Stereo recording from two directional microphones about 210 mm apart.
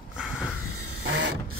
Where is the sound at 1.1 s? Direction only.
65° right (ahead or behind).